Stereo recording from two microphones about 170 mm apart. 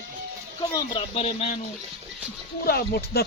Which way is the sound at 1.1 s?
35° left (ahead or behind).